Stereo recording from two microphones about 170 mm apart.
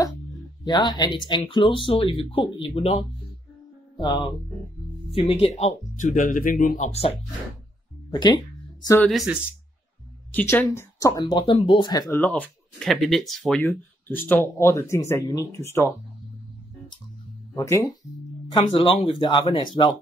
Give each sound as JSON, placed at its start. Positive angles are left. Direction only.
{"t": 0.7, "sound": "speech", "side_deg": 25}
{"t": 5.1, "sound": "speech", "side_deg": 35}
{"t": 6.9, "sound": "speech", "side_deg": 35}
{"t": 8.1, "sound": "a sound", "side_deg": 25}
{"t": 9.0, "sound": "speech", "side_deg": 0}
{"t": 10.3, "sound": "speech", "side_deg": 10}
{"t": 12.2, "sound": "speech", "side_deg": 5}
{"t": 13.7, "sound": "speech", "side_deg": 10}
{"t": 17.6, "sound": "speech", "side_deg": 20}
{"t": 18.5, "sound": "speech", "side_deg": 30}